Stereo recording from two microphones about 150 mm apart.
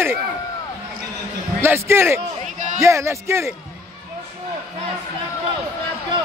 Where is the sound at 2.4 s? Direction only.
55° right (ahead or behind).